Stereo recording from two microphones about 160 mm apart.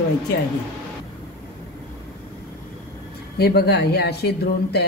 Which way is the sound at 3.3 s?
85° left.